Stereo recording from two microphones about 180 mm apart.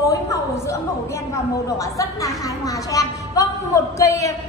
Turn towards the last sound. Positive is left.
turn(degrees=15)  # may be behind; listen again after turning